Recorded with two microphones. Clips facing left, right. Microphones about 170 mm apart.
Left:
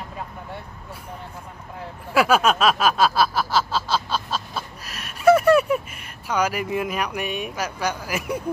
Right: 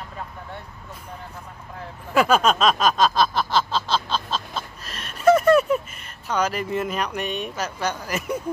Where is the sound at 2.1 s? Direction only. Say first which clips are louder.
Even; 10° left (ahead or behind).